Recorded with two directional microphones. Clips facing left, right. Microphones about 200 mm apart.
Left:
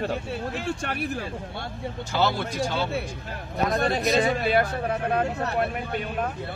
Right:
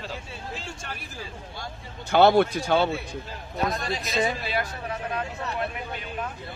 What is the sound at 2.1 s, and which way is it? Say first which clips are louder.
Speech: right 8 dB; 60° right (ahead or behind).